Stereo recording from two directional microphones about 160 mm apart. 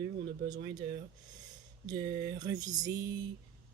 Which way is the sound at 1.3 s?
25° right (ahead or behind).